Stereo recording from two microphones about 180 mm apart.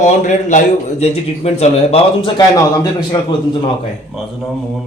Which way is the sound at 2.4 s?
20° left (ahead or behind).